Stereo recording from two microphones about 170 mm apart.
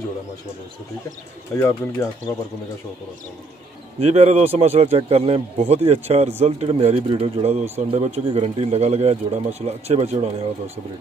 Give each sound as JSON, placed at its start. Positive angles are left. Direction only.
{"t": 1.5, "sound": "speech", "side_deg": 15}
{"t": 4.0, "sound": "speech", "side_deg": -40}